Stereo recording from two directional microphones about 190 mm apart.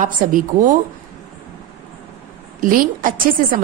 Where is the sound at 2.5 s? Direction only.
45° right (ahead or behind).